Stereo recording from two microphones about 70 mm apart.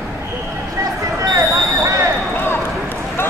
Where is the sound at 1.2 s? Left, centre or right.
Right.